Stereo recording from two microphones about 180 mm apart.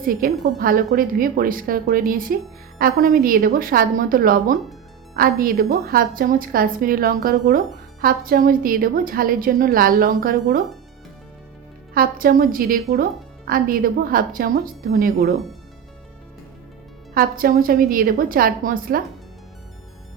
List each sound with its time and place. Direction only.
0.0 s a woman's voice: 55° right (ahead or behind)
11.9 s a woman's voice: 50° right (ahead or behind)
17.2 s a woman's voice: 55° right (ahead or behind)